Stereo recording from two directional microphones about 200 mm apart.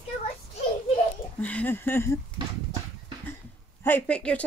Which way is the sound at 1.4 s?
5° left (ahead or behind).